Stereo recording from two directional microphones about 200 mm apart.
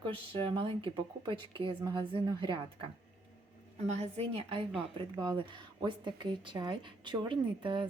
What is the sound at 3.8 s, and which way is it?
Speech, 35° right (ahead or behind).